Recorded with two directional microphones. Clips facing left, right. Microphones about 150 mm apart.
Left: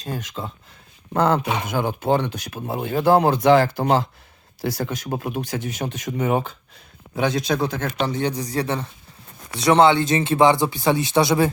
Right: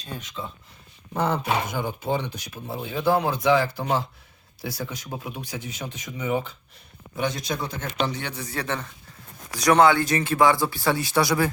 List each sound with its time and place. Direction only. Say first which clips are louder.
1.1 s speech: left 4 dB; 75° left (ahead or behind)
7.2 s a man's voice: left 6 dB; 90° left
7.9 s speech: left 5 dB; 45° left (ahead or behind); by 11.5 s 25° left (ahead or behind)